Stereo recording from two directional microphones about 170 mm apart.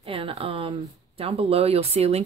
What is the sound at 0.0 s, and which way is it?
Speech, 35° right (ahead or behind).